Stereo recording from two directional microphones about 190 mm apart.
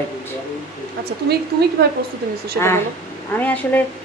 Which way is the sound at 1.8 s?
55° right (ahead or behind).